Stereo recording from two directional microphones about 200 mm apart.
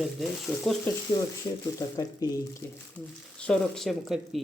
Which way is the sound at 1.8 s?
20° left (ahead or behind).